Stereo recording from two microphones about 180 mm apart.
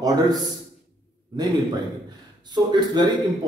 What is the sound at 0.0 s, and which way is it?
Speech, 20° right (ahead or behind).